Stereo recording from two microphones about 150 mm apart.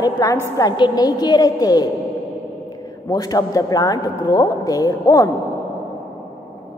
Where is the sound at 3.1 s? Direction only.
25° left (ahead or behind).